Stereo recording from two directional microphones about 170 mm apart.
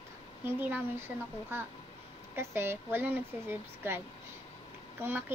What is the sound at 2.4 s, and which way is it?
Speech, 15° right (ahead or behind).